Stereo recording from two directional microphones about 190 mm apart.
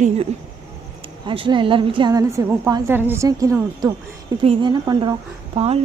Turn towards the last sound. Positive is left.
turn(degrees=-30)  # may be behind; listen again after turning